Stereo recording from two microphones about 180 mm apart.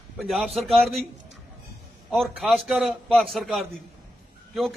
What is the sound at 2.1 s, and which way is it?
A man's voice, centre (ahead or behind).